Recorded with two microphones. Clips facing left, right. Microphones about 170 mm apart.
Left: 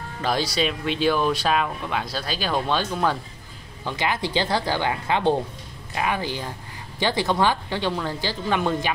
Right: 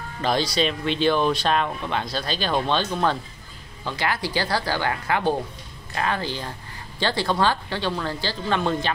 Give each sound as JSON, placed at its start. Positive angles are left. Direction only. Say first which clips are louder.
{"t": 0.2, "sound": "speech", "louder": "right 1 dB", "side_deg": 5}
{"t": 3.8, "sound": "speech", "louder": "left 1 dB", "side_deg": 20}